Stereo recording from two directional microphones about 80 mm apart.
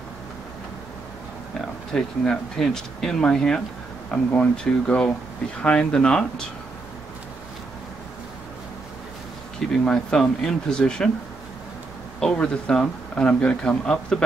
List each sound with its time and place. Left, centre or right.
1.6 s speech: centre
9.8 s speech: centre
12.2 s speech: centre